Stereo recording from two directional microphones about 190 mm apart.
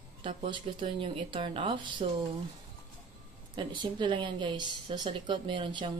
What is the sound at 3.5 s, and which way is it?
Speech, 25° right (ahead or behind).